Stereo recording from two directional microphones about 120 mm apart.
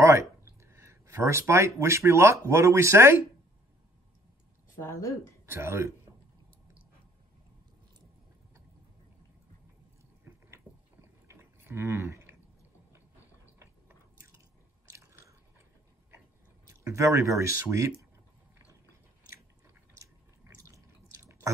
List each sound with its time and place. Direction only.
0.0 s speech: 25° right (ahead or behind)
4.7 s speech: 25° left (ahead or behind)
5.5 s speech: 20° right (ahead or behind)
10.2 s a sound: 20° right (ahead or behind)
13.6 s biting: 20° right (ahead or behind)
15.0 s chewing: 25° right (ahead or behind)
16.6 s speech: 25° right (ahead or behind)
20.0 s drip: 25° right (ahead or behind)